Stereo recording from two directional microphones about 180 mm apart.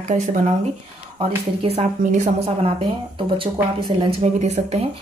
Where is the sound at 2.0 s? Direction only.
45° right (ahead or behind).